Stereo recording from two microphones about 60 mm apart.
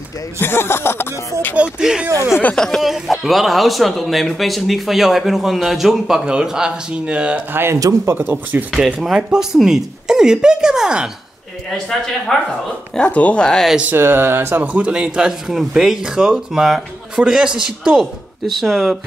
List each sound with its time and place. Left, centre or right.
0.4 s speech: left
1.8 s speech: centre
2.5 s speech: centre
2.8 s speech: centre
7.5 s speech: right
9.0 s speech: centre
11.7 s speech: centre
13.0 s speech: left
13.9 s speech: right
14.6 s speech: right
18.4 s speech: centre